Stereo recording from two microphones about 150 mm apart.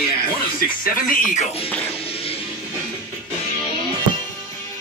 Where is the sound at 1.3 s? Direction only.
40° left (ahead or behind).